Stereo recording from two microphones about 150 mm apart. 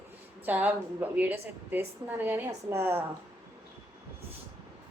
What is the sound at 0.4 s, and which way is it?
A woman's voice, 10° right (ahead or behind).